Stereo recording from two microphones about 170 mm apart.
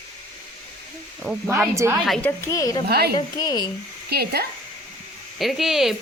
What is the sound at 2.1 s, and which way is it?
Speech, 10° left (ahead or behind).